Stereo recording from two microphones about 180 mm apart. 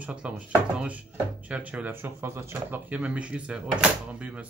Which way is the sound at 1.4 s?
5° right (ahead or behind).